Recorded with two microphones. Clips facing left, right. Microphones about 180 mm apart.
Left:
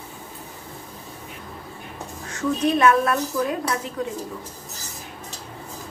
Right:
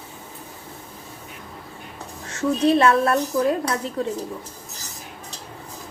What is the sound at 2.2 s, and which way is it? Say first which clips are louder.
A woman's voice: right 3 dB; 30° right (ahead or behind).